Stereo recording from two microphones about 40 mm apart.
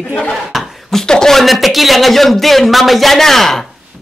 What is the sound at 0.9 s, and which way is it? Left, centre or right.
Speech, centre.